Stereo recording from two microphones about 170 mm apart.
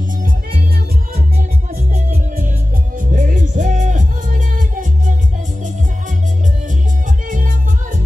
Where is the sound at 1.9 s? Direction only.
55° right (ahead or behind).